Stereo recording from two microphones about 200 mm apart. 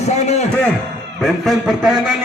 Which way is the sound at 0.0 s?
35° left (ahead or behind).